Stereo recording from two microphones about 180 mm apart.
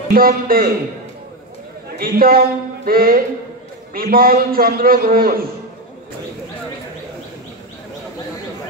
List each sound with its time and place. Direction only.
0.1 s a man's voice: 55° right (ahead or behind)
2.0 s a man's voice: 55° right (ahead or behind)